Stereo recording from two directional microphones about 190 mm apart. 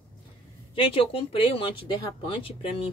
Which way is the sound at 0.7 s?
30° left (ahead or behind).